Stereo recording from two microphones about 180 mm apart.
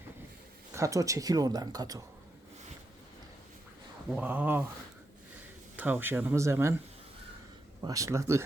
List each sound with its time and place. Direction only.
0.8 s speech: 20° right (ahead or behind)
4.1 s speech: 10° right (ahead or behind)
5.7 s speech: 10° right (ahead or behind)
7.8 s speech: 20° right (ahead or behind)